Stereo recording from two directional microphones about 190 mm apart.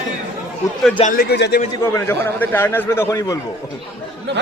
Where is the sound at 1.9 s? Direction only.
15° left (ahead or behind).